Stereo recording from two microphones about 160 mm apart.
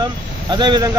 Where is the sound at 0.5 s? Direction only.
25° right (ahead or behind).